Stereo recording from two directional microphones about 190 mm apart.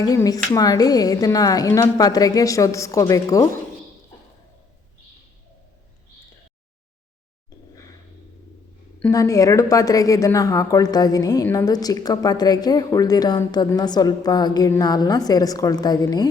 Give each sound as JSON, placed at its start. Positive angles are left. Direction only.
{"t": 0.0, "sound": "speech", "side_deg": 20}
{"t": 9.0, "sound": "speech", "side_deg": 15}